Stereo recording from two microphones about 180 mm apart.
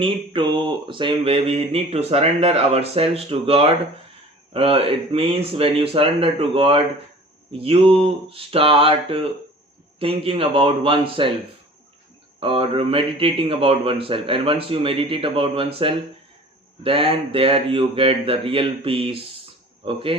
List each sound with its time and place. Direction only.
0.0 s mantra: 25° right (ahead or behind)
12.4 s speech: 30° right (ahead or behind)
16.8 s mantra: 30° right (ahead or behind)
19.8 s speech: 30° right (ahead or behind)